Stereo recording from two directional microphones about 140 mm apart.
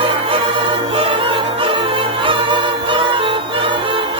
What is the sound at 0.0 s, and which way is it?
Music, 40° right (ahead or behind).